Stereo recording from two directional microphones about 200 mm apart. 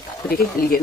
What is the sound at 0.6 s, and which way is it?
Speech, 45° left (ahead or behind).